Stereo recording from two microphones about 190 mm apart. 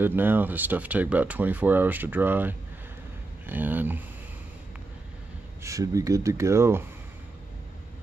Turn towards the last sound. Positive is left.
turn(degrees=-15)  # may be behind; listen again after turning